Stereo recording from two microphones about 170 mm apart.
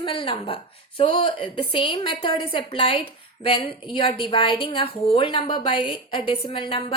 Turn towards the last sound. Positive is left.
turn(degrees=30)  # may be behind; listen again after turning